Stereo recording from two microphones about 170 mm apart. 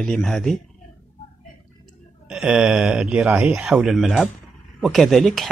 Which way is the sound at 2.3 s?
5° right (ahead or behind).